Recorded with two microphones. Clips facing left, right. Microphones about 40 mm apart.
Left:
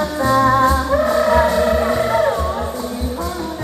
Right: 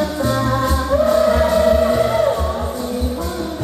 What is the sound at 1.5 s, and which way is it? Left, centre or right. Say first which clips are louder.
Music: right 2 dB; centre.